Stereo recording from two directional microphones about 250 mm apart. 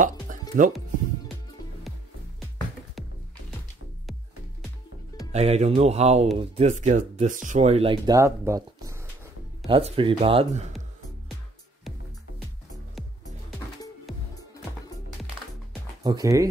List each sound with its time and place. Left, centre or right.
0.0 s music: right
5.3 s speech: right
9.7 s speech: right
16.0 s speech: centre